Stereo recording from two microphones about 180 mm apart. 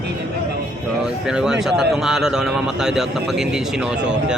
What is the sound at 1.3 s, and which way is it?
A man's voice, 5° right (ahead or behind).